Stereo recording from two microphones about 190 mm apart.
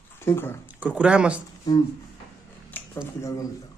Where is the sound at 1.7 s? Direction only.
20° left (ahead or behind).